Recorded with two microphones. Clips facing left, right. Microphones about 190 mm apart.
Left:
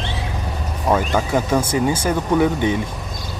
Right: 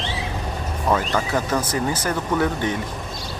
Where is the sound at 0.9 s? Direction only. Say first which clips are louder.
Left 3 dB; 10° left (ahead or behind).